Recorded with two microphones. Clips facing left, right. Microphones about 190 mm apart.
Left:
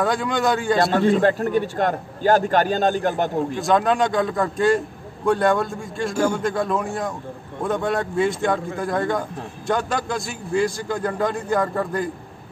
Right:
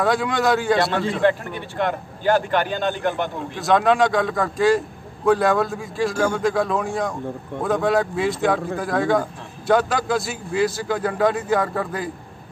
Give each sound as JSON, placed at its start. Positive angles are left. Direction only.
{"t": 0.0, "sound": "a man's voice", "side_deg": 0}
{"t": 0.9, "sound": "a man's voice", "side_deg": 45}
{"t": 3.5, "sound": "a man's voice", "side_deg": 0}